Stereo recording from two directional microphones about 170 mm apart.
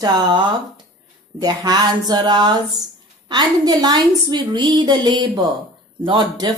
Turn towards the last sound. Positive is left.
turn(degrees=-25)  # may be behind; listen again after turning